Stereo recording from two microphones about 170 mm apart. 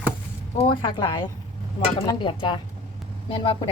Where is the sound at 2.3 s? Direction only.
30° left (ahead or behind).